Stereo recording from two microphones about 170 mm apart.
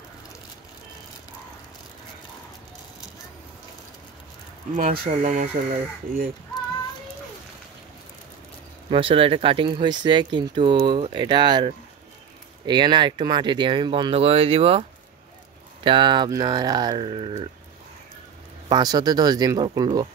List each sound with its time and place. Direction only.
4.7 s speech: 50° right (ahead or behind)
5.0 s speech: 40° right (ahead or behind)
8.9 s speech: 30° right (ahead or behind)
18.7 s speech: 25° right (ahead or behind)